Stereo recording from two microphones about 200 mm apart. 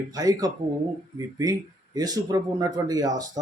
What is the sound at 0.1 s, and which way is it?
Speech, 20° right (ahead or behind).